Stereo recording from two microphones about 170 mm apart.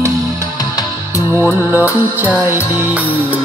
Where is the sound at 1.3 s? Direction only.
15° right (ahead or behind).